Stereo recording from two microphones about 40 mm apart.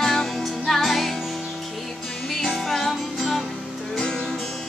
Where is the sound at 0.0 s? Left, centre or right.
Centre.